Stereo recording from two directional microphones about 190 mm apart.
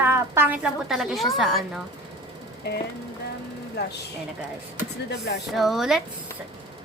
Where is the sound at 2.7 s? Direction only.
60° left (ahead or behind).